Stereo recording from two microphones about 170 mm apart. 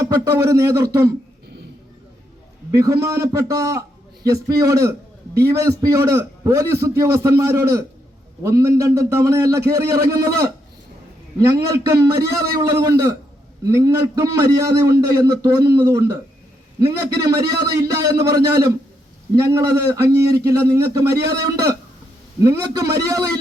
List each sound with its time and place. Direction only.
0.0 s a man's voice: 20° right (ahead or behind)
2.7 s a man's voice: 20° right (ahead or behind)
17.2 s a man's voice: 25° right (ahead or behind)